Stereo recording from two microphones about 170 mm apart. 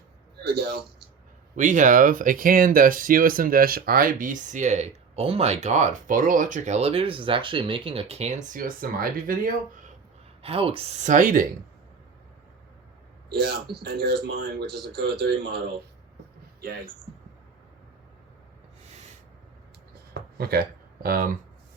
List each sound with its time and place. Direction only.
0.4 s a sound: 70° right (ahead or behind)
1.5 s speech: 50° right (ahead or behind)
10.4 s speech: 35° right (ahead or behind); by 11.4 s 50° right (ahead or behind)
13.4 s speech: 70° right (ahead or behind)
20.1 s a sound: 80° right
21.0 s speech: 55° right (ahead or behind)